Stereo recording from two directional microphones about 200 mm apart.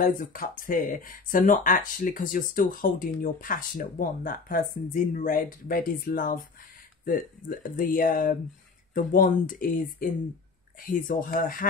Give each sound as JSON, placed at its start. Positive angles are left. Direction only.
{"t": 0.0, "sound": "speech", "side_deg": 45}